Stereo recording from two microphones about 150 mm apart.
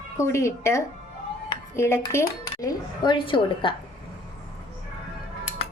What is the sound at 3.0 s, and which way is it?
Speech, 35° left (ahead or behind).